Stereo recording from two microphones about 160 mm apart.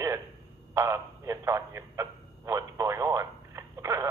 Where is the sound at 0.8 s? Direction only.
15° right (ahead or behind).